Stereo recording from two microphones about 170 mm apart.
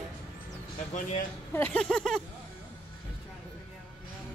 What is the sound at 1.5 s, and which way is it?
Speech, 10° left (ahead or behind).